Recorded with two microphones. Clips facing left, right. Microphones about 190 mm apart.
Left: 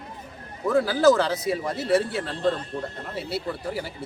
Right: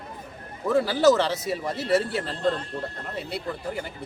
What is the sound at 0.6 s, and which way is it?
Speech, centre (ahead or behind).